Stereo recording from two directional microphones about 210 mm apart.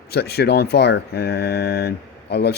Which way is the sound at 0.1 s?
50° left (ahead or behind).